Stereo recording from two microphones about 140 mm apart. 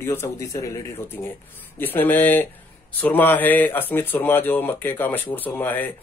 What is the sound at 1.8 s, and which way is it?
Speech, 15° left (ahead or behind).